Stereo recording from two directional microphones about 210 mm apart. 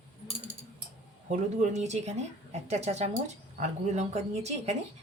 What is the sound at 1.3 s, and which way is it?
Speech, 35° right (ahead or behind).